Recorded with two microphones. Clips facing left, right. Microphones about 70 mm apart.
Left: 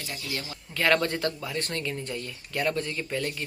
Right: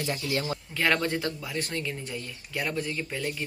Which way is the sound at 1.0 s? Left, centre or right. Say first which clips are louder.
Left 1 dB; centre.